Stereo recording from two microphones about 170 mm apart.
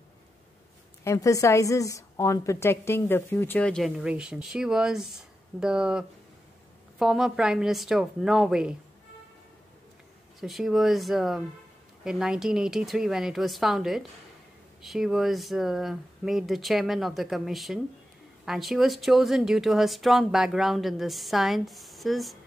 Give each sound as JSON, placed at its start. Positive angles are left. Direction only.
{"t": 1.0, "sound": "a woman's voice", "side_deg": 20}
{"t": 10.4, "sound": "speech", "side_deg": 0}